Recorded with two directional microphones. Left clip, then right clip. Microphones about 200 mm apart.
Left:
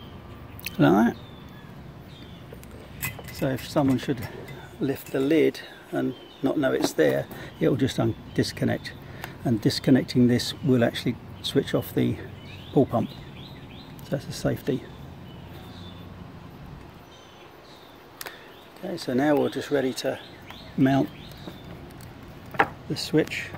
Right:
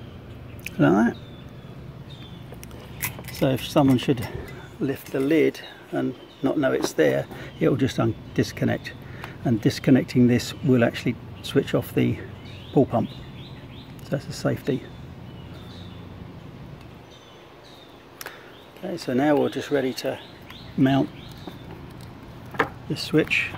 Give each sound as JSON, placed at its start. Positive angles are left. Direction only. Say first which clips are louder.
{"t": 0.7, "sound": "speech", "louder": "even", "side_deg": 5}
{"t": 3.3, "sound": "speech", "louder": "right 5 dB", "side_deg": -15}
{"t": 4.8, "sound": "speech", "louder": "right 1 dB", "side_deg": 0}
{"t": 14.0, "sound": "speech", "louder": "right 2 dB", "side_deg": 0}
{"t": 18.9, "sound": "speech", "louder": "right 2 dB", "side_deg": -5}
{"t": 22.6, "sound": "speech", "louder": "left 1 dB", "side_deg": 0}